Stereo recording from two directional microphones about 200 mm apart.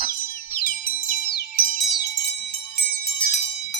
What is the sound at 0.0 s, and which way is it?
Wind chime, 45° left (ahead or behind).